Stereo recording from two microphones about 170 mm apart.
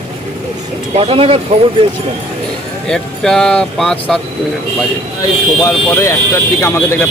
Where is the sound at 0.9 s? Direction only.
35° right (ahead or behind).